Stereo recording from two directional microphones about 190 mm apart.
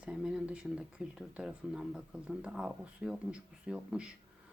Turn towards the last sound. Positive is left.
turn(degrees=-5)  # may be behind; listen again after turning